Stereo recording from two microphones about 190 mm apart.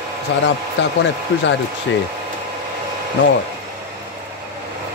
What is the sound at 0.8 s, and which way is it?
Speech, 70° left (ahead or behind).